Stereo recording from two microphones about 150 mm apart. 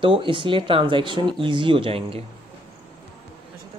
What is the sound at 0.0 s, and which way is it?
Speech, 35° right (ahead or behind).